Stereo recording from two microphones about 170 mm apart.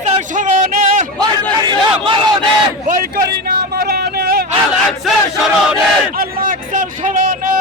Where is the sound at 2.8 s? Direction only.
55° right (ahead or behind).